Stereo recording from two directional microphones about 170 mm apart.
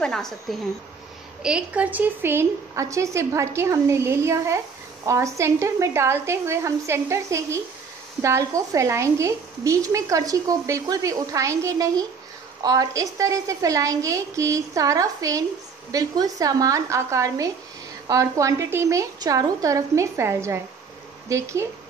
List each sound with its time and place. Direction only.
0.0 s a woman's voice: 5° left (ahead or behind); by 21.6 s 15° right (ahead or behind)